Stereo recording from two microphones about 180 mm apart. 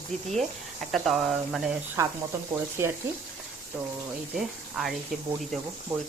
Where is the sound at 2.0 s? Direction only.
15° right (ahead or behind).